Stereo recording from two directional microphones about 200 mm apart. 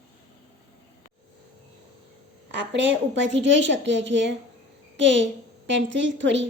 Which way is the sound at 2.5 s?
65° right (ahead or behind).